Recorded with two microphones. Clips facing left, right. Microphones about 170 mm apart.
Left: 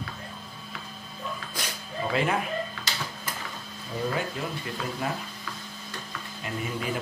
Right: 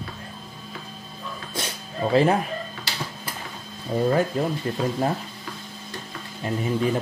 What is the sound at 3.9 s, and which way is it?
Speech, 40° right (ahead or behind).